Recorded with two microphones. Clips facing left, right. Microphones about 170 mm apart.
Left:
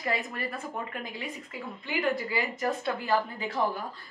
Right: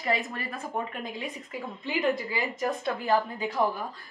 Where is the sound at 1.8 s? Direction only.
20° right (ahead or behind).